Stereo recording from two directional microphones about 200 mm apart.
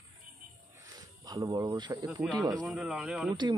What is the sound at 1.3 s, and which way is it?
Speech, 20° right (ahead or behind).